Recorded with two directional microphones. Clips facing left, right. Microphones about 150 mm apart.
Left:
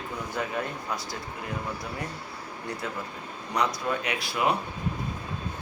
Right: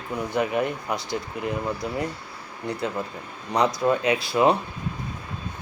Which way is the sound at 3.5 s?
25° right (ahead or behind).